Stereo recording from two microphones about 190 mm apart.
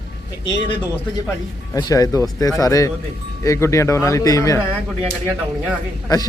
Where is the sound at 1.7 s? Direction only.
20° left (ahead or behind).